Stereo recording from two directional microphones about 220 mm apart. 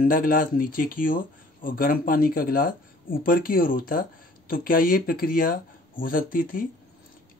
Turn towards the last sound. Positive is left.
turn(degrees=40)  # may be behind; listen again after turning